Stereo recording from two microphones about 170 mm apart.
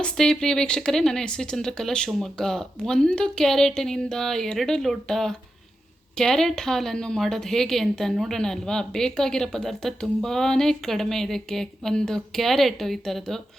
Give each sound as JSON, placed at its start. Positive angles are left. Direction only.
{"t": 0.0, "sound": "a woman's voice", "side_deg": 5}